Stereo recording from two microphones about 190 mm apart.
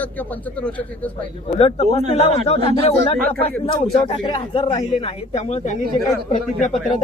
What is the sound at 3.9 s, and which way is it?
Speech, 25° left (ahead or behind).